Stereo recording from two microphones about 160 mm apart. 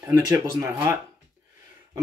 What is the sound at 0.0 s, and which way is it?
Speech, 20° right (ahead or behind).